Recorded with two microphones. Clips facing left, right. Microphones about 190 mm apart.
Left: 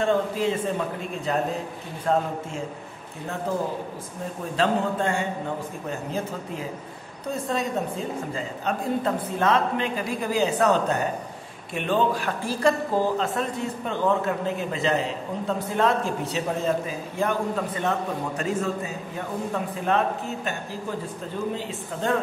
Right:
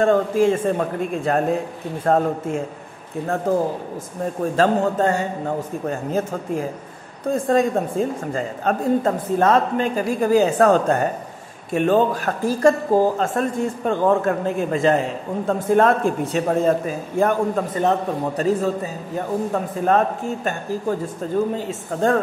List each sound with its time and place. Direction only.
0.0 s a woman's voice: 50° right (ahead or behind)
21.5 s a woman's voice: 45° right (ahead or behind)